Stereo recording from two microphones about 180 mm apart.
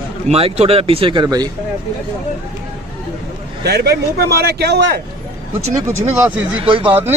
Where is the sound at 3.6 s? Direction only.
65° right (ahead or behind).